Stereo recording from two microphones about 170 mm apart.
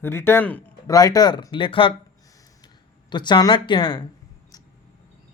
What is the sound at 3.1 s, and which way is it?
Speech, 25° left (ahead or behind).